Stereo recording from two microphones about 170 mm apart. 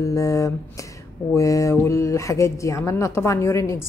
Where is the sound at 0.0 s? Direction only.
20° left (ahead or behind).